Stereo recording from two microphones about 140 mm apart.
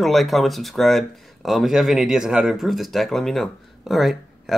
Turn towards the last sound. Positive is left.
turn(degrees=0)  # may be behind; listen again after turning